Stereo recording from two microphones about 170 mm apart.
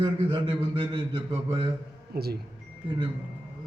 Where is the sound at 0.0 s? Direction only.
30° right (ahead or behind).